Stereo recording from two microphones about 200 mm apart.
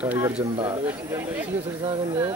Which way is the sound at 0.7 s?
10° right (ahead or behind).